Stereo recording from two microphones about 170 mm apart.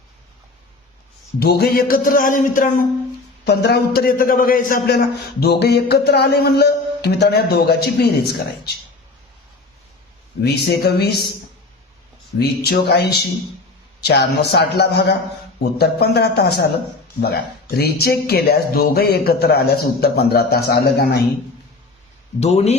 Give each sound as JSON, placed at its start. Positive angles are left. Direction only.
{"t": 1.4, "sound": "music", "side_deg": 70}
{"t": 3.4, "sound": "a man's voice", "side_deg": 75}
{"t": 10.4, "sound": "a man's voice", "side_deg": 75}
{"t": 12.4, "sound": "a man's voice", "side_deg": 65}
{"t": 22.4, "sound": "speech", "side_deg": 40}